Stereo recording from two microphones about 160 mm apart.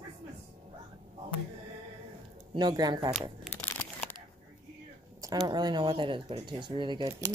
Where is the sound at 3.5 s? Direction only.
10° left (ahead or behind).